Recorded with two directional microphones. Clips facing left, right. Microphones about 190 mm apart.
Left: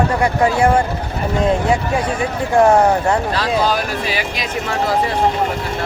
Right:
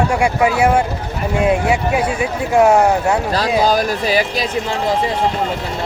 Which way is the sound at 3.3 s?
40° right (ahead or behind).